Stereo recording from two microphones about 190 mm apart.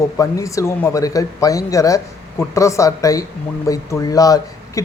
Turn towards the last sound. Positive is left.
turn(degrees=20)  # may be behind; listen again after turning